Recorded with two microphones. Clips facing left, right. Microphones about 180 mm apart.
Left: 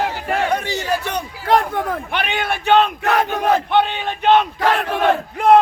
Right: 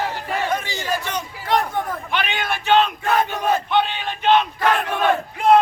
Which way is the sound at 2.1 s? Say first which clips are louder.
Left 2 dB; 55° left (ahead or behind).